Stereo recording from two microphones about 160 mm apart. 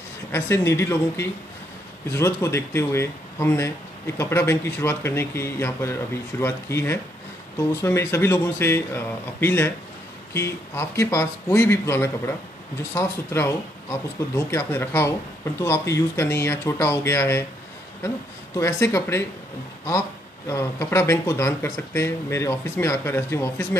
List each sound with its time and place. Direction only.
0.3 s speech: 15° left (ahead or behind)
18.6 s speech: 15° left (ahead or behind)
20.4 s speech: 15° left (ahead or behind)